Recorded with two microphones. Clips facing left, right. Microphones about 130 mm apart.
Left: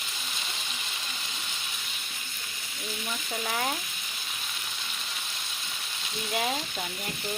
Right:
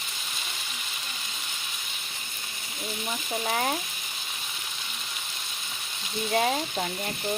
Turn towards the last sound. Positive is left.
turn(degrees=-40)  # may be behind; listen again after turning